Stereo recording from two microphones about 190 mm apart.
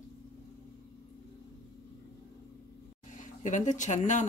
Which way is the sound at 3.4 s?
40° left (ahead or behind).